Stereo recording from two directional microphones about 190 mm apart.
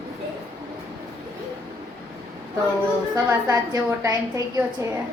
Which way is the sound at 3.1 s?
15° right (ahead or behind).